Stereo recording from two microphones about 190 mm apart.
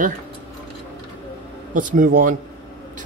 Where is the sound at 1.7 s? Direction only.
45° right (ahead or behind).